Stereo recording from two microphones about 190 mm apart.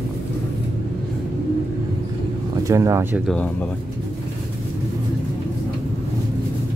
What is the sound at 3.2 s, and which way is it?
Speech, 5° left (ahead or behind).